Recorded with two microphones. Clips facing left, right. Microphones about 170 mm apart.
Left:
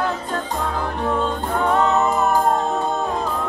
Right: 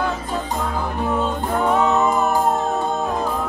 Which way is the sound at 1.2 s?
5° right (ahead or behind).